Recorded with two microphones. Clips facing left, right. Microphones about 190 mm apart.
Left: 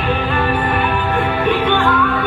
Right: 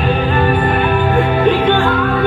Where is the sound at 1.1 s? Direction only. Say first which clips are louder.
Right 4 dB; 35° right (ahead or behind).